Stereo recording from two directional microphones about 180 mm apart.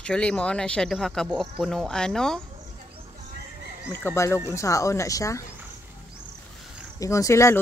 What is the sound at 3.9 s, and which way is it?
Speech, 15° left (ahead or behind).